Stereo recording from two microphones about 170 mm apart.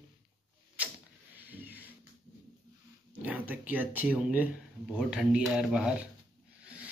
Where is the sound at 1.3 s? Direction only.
10° right (ahead or behind).